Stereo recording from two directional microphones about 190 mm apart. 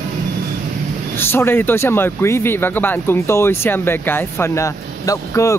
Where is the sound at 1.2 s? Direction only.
10° left (ahead or behind).